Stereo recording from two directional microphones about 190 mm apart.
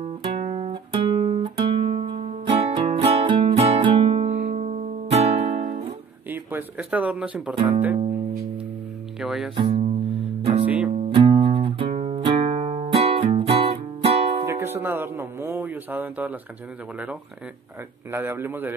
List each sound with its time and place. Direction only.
0.0 s music: 30° right (ahead or behind)
6.3 s speech: 10° right (ahead or behind)
7.5 s speech: 30° right (ahead or behind)
9.2 s speech: centre (ahead or behind)
9.6 s speech: 30° right (ahead or behind)
10.9 s music: 35° right (ahead or behind)
14.4 s music: 15° right (ahead or behind)
18.1 s a man's voice: 10° right (ahead or behind)